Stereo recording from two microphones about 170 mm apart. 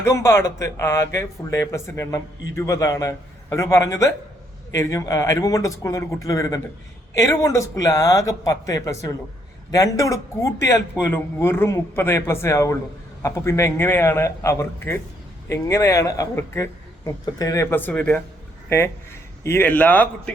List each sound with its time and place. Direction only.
0.0 s speech: 15° left (ahead or behind)
19.4 s speech: 15° left (ahead or behind)